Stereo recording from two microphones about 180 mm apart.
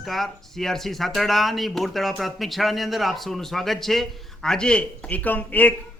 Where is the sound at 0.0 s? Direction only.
Centre (ahead or behind).